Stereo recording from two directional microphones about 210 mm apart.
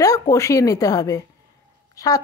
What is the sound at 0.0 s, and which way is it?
A woman's voice, 15° left (ahead or behind).